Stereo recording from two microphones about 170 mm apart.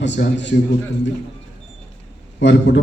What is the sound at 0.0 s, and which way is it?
Speech, 90° left.